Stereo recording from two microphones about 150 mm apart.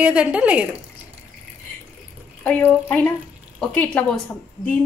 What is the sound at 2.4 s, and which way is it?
Speech, 10° left (ahead or behind).